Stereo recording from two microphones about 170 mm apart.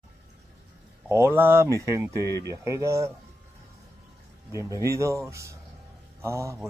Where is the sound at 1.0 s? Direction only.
15° right (ahead or behind).